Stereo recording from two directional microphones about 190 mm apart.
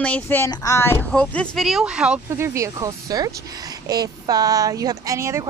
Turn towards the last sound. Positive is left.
turn(degrees=-15)  # may be behind; listen again after turning